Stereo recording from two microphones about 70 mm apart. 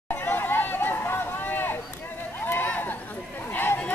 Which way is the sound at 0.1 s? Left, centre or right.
Left.